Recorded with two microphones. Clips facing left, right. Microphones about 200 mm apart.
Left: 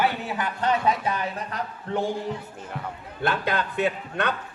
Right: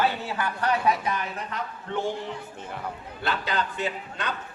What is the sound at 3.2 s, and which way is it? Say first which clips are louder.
A man's voice: left 3 dB; 55° left (ahead or behind).